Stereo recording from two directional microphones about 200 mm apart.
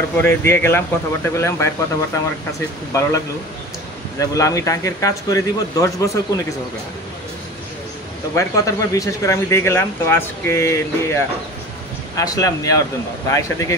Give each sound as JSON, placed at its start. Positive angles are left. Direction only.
{"t": 0.2, "sound": "speech", "side_deg": 10}
{"t": 4.2, "sound": "speech", "side_deg": 15}
{"t": 8.4, "sound": "speech", "side_deg": 15}